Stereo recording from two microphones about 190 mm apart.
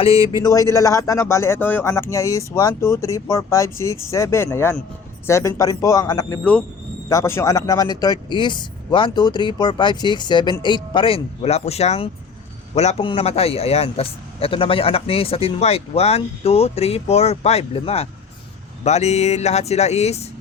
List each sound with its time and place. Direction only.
0.0 s speech: 30° left (ahead or behind)
0.4 s a man's voice: 15° left (ahead or behind); by 20.2 s 35° left (ahead or behind)